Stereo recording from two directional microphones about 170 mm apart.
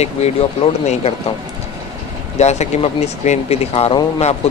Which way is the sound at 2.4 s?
40° left (ahead or behind).